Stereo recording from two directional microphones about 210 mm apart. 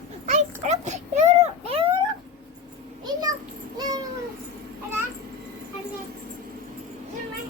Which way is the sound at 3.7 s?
20° right (ahead or behind).